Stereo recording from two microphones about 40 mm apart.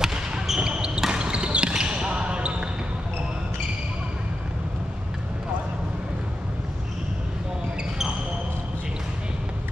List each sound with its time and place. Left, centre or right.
0.0 s basketball bounce: centre